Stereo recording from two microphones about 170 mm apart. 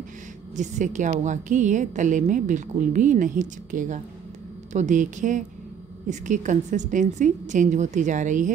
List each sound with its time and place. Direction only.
0.6 s a woman's voice: 45° right (ahead or behind)